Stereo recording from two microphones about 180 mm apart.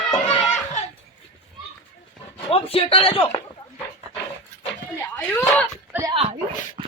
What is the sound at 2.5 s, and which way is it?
Speech, 30° left (ahead or behind).